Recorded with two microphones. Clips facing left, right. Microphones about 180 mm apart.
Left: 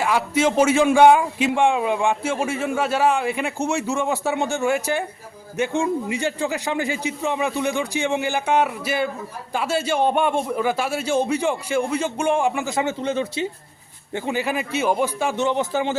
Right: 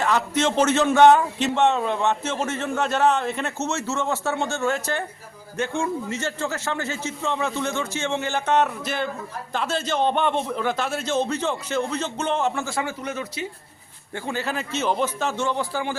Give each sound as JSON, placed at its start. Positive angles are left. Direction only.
{"t": 0.0, "sound": "a man's voice", "side_deg": 10}